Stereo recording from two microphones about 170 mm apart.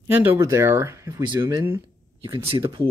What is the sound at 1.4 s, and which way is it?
Speech, 25° right (ahead or behind).